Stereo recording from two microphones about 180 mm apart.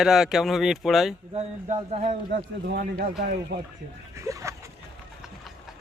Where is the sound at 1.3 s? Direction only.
35° right (ahead or behind).